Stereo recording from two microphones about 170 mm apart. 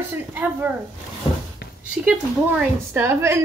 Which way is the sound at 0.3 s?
10° right (ahead or behind).